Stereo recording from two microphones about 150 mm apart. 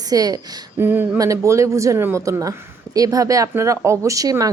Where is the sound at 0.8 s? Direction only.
15° right (ahead or behind).